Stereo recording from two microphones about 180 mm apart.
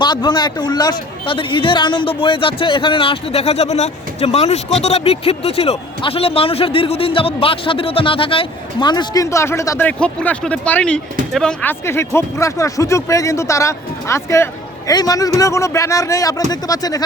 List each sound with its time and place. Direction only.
0.0 s speech: 25° left (ahead or behind)